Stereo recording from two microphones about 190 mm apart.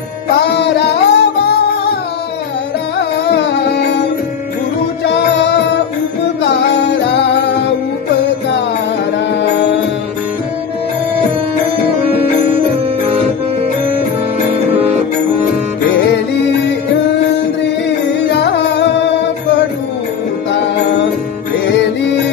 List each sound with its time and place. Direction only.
0.4 s music: 65° left (ahead or behind)
3.3 s music: 65° left (ahead or behind)
5.0 s music: 65° left (ahead or behind)
14.7 s music: 30° right (ahead or behind)
18.3 s music: 65° left (ahead or behind)